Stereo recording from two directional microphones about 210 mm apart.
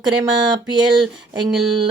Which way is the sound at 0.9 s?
Centre (ahead or behind).